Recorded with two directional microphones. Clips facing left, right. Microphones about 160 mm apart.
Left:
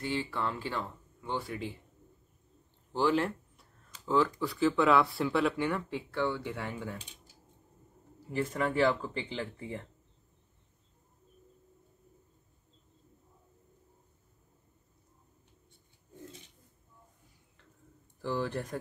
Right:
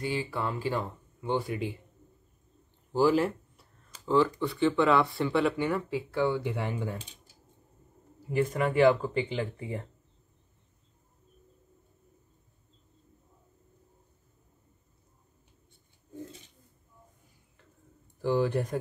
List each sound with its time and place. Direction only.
0.0 s speech: 10° right (ahead or behind)
2.9 s speech: 5° right (ahead or behind)
8.3 s speech: 10° right (ahead or behind)
18.2 s speech: 15° right (ahead or behind)